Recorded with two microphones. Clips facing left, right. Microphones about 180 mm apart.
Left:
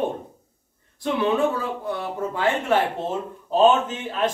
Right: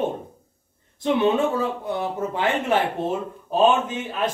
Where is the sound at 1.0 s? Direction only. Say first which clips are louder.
Right 2 dB; 25° right (ahead or behind).